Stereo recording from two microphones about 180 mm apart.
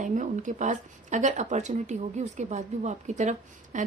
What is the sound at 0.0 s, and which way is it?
Speech, 45° right (ahead or behind).